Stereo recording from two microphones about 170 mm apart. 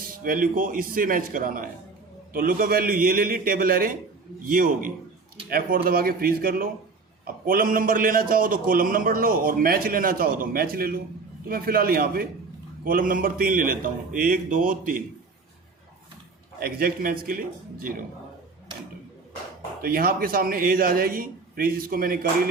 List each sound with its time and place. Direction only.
0.1 s a man's voice: 55° right (ahead or behind)
16.6 s a man's voice: 60° right (ahead or behind)
19.8 s a man's voice: 60° right (ahead or behind)